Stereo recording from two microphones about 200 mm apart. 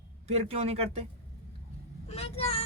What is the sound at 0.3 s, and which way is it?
Speech, 30° right (ahead or behind).